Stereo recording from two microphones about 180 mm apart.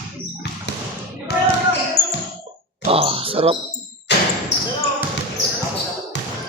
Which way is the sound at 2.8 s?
30° right (ahead or behind).